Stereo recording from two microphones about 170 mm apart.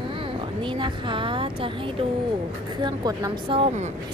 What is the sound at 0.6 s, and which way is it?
Speech, 30° right (ahead or behind).